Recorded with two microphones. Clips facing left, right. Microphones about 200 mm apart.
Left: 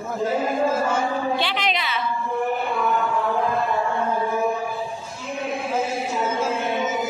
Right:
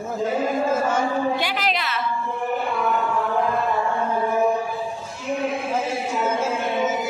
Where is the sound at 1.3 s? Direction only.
5° right (ahead or behind).